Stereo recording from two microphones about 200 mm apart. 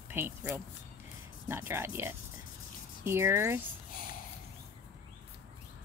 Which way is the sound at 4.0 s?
45° left (ahead or behind).